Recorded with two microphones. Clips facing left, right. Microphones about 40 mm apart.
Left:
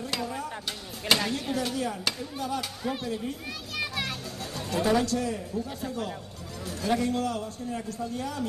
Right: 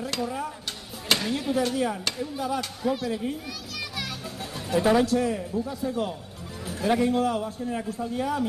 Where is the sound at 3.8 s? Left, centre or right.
Left.